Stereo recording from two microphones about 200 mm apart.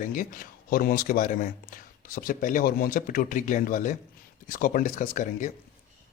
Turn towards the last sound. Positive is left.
turn(degrees=40)  # may be behind; listen again after turning